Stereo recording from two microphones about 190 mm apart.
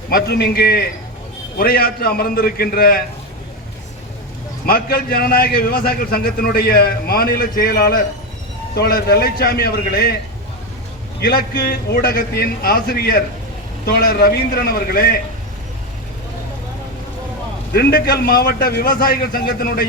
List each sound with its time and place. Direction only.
0.1 s a man's voice: 55° left (ahead or behind)
4.6 s a man's voice: 50° left (ahead or behind)
11.2 s a man's voice: 55° left (ahead or behind)
17.7 s a man's voice: 55° left (ahead or behind)